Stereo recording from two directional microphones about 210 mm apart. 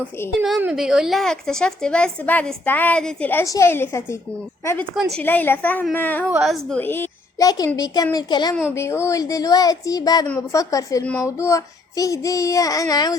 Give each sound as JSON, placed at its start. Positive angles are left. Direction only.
{"t": 0.4, "sound": "a child's voice", "side_deg": -5}